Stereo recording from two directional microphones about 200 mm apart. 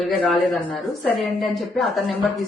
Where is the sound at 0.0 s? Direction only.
Centre (ahead or behind).